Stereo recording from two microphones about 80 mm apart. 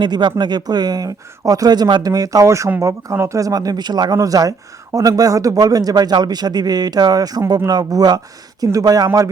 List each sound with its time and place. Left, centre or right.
0.0 s speech: right